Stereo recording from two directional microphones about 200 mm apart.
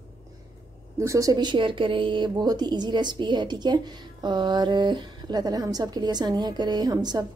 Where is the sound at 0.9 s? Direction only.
15° right (ahead or behind).